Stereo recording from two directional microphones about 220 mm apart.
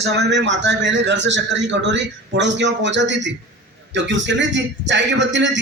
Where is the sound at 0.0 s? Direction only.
50° right (ahead or behind).